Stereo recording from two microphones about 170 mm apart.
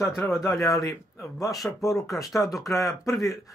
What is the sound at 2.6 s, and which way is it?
Speech, 20° left (ahead or behind).